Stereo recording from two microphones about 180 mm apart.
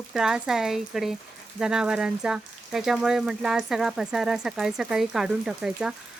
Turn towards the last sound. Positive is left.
turn(degrees=-5)  # may be behind; listen again after turning